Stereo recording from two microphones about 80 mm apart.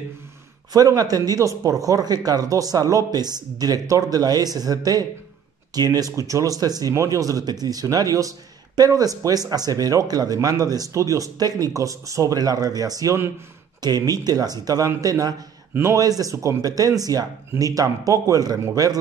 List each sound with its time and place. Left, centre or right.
0.7 s a man's voice: right
6.9 s a man's voice: right
15.7 s a man's voice: right